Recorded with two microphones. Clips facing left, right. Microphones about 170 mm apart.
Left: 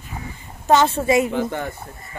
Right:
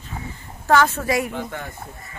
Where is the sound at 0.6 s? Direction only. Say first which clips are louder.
Left 2 dB; 25° left (ahead or behind).